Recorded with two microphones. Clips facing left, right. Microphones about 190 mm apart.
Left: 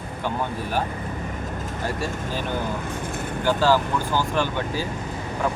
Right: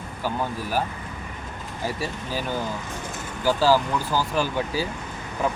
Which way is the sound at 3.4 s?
5° right (ahead or behind).